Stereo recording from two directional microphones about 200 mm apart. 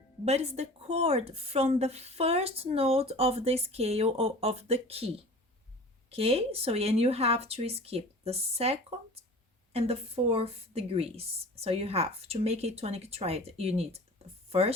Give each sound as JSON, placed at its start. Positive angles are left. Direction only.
{"t": 0.3, "sound": "speech", "side_deg": -35}